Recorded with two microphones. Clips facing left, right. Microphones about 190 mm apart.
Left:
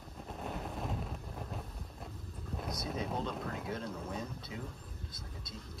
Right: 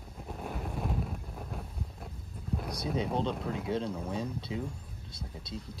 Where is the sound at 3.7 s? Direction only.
30° right (ahead or behind).